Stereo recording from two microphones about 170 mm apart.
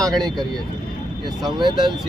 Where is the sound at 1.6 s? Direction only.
25° right (ahead or behind).